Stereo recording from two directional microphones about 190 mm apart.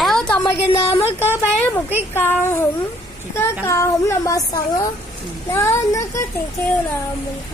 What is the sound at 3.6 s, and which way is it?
Speech, 15° left (ahead or behind).